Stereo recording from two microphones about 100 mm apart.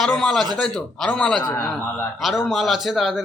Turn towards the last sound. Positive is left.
turn(degrees=0)  # may be behind; listen again after turning